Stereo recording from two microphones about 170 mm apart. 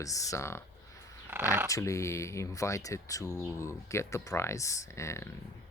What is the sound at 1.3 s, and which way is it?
Speech, 15° right (ahead or behind).